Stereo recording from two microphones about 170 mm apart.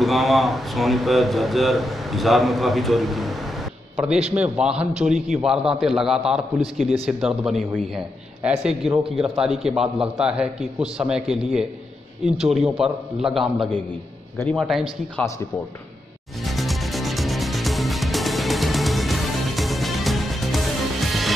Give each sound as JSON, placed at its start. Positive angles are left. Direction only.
{"t": 0.0, "sound": "a man's voice", "side_deg": 0}
{"t": 15.1, "sound": "speech", "side_deg": 20}
{"t": 16.4, "sound": "music", "side_deg": 0}